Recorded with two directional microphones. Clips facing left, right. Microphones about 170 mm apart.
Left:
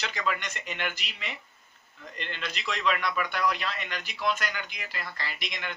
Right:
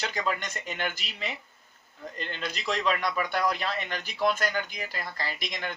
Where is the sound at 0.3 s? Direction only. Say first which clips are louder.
Right 2 dB; 40° right (ahead or behind).